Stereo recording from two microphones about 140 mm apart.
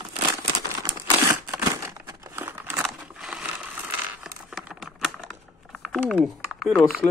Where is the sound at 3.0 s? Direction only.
5° right (ahead or behind).